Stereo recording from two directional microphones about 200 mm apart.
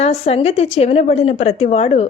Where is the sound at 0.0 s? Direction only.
30° left (ahead or behind).